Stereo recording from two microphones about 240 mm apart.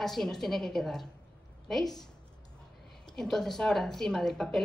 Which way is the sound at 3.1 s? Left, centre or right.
Centre.